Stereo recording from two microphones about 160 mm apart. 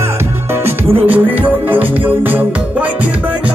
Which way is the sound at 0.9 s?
35° right (ahead or behind).